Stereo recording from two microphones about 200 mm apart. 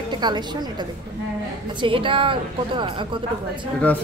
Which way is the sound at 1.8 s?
25° right (ahead or behind).